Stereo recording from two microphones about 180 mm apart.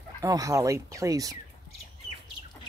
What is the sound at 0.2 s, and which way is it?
Speech, 15° right (ahead or behind).